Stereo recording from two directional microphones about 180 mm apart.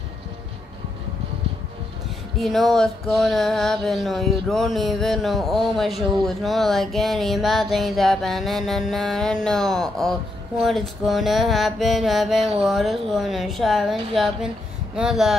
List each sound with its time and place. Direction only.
2.4 s speech: centre (ahead or behind)